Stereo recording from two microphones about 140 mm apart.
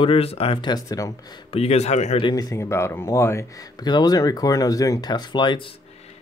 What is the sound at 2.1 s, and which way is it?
Speech, 30° left (ahead or behind).